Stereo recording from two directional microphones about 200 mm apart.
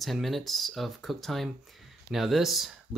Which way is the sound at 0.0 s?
Centre (ahead or behind).